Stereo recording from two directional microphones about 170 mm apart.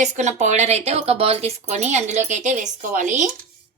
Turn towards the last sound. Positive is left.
turn(degrees=-45)  # may be behind; listen again after turning